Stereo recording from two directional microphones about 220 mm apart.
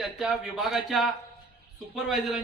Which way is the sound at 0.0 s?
Centre (ahead or behind).